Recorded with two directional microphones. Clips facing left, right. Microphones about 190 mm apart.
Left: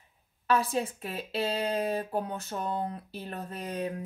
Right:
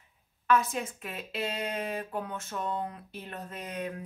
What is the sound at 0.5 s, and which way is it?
Speech, 35° left (ahead or behind).